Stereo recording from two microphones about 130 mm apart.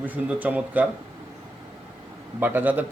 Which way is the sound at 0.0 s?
15° right (ahead or behind).